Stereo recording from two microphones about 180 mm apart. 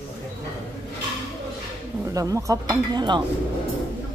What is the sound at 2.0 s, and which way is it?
Speech, 20° right (ahead or behind).